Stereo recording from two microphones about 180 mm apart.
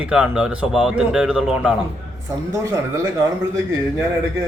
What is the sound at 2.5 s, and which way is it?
Speech, 15° right (ahead or behind).